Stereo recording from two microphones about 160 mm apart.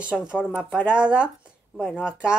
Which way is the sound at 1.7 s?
5° left (ahead or behind).